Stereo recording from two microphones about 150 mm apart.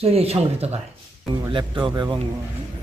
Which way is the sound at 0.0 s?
45° right (ahead or behind).